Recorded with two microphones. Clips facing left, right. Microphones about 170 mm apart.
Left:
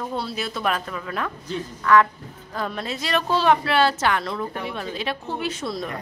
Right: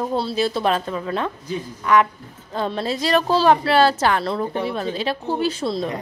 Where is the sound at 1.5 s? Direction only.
20° right (ahead or behind).